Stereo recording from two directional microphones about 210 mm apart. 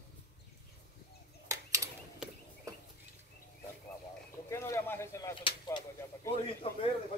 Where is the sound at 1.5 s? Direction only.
15° right (ahead or behind).